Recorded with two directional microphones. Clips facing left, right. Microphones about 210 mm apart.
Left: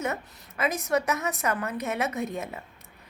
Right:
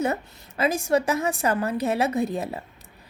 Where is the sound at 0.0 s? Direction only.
30° right (ahead or behind).